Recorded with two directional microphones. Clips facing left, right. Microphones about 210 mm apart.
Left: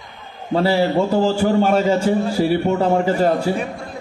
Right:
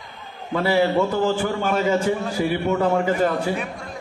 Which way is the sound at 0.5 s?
30° left (ahead or behind).